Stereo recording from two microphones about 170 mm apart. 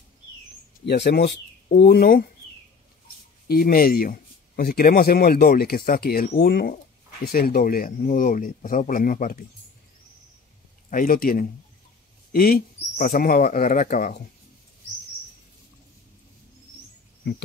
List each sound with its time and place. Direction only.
0.8 s speech: 80° left
1.7 s speech: 60° left (ahead or behind)
3.4 s speech: 60° left (ahead or behind)
10.9 s speech: 55° left (ahead or behind)